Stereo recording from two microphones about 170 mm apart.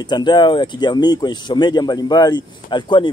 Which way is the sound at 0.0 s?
25° left (ahead or behind).